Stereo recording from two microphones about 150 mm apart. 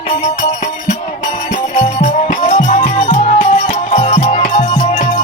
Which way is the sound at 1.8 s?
45° left (ahead or behind).